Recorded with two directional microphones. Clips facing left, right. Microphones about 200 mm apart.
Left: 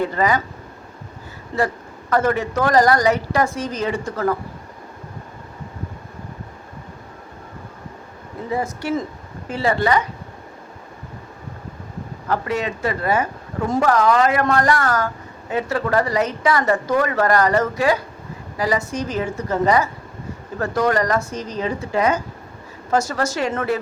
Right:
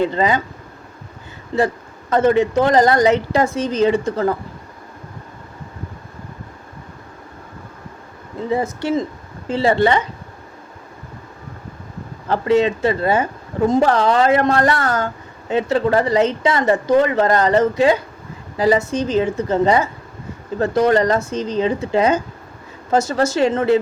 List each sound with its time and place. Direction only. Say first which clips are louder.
0.0 s a woman's voice: right 2 dB; 25° right (ahead or behind)
1.5 s a woman's voice: right 4 dB; 20° right (ahead or behind)
8.4 s a woman's voice: right 3 dB; 25° right (ahead or behind)
12.3 s a woman's voice: right 7 dB; 25° right (ahead or behind)